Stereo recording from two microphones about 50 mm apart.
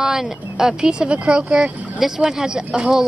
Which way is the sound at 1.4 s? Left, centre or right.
Centre.